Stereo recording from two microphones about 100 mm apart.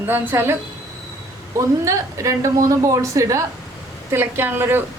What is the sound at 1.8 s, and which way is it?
A woman's voice, 30° right (ahead or behind).